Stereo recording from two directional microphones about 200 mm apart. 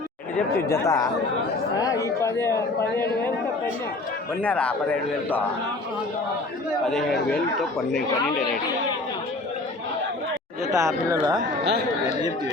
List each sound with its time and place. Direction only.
0.7 s a man's voice: 15° left (ahead or behind)
4.4 s a man's voice: 5° left (ahead or behind)
6.8 s speech: centre (ahead or behind)
10.8 s speech: 15° right (ahead or behind)